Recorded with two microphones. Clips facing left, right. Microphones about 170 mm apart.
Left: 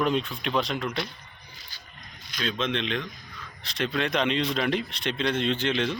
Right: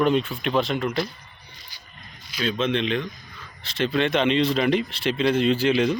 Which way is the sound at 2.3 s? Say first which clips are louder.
Right 5 dB; 5° right (ahead or behind).